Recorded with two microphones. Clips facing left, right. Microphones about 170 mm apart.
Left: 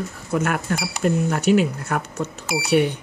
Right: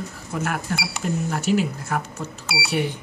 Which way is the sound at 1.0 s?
65° left (ahead or behind).